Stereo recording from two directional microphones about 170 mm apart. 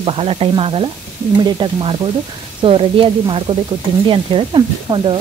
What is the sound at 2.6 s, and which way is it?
Speech, 30° right (ahead or behind).